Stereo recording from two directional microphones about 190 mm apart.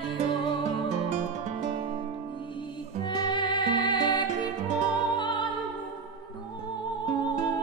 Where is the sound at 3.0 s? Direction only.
25° left (ahead or behind).